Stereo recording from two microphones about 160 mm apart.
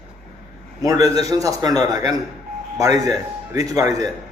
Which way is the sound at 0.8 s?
20° right (ahead or behind).